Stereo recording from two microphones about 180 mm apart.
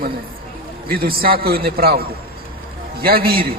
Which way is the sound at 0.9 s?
55° right (ahead or behind).